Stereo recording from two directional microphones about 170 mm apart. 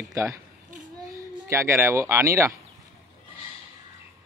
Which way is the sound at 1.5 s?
15° right (ahead or behind).